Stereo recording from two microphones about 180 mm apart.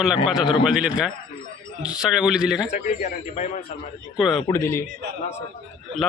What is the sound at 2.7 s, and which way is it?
Speech, 45° left (ahead or behind).